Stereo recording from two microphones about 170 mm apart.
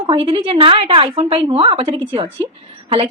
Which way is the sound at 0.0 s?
30° right (ahead or behind).